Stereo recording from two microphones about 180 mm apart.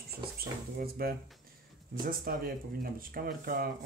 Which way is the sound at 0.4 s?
55° right (ahead or behind).